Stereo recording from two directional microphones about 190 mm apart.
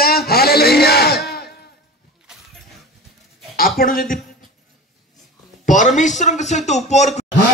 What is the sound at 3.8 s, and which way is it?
Speech, 50° left (ahead or behind).